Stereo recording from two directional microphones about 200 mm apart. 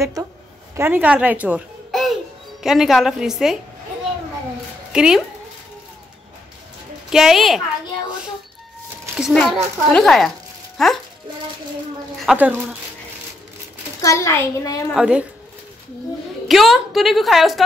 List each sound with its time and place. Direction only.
0.0 s a child's voice: 15° right (ahead or behind)
4.9 s speech: 5° right (ahead or behind)
7.1 s speech: centre (ahead or behind)
9.0 s speech: 5° right (ahead or behind)
12.3 s speech: 10° right (ahead or behind)
14.0 s a woman's voice: 15° left (ahead or behind)
15.0 s speech: 5° right (ahead or behind)
16.4 s speech: centre (ahead or behind)